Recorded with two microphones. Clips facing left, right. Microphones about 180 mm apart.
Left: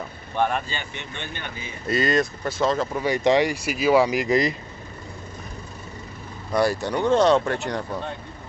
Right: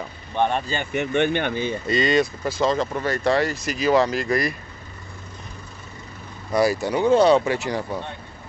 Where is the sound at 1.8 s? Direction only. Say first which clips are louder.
Even; centre (ahead or behind).